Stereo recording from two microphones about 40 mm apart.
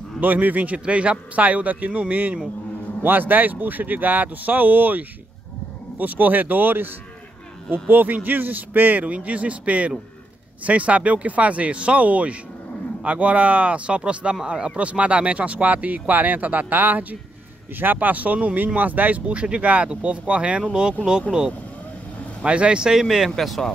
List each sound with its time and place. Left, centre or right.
0.2 s speech: right
0.7 s speech: right
3.0 s speech: right
7.9 s speech: right
9.0 s speech: right
19.9 s speech: right
21.3 s speech: centre
22.4 s speech: right
22.9 s speech: centre